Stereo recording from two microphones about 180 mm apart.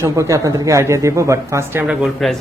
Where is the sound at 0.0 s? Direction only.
15° right (ahead or behind).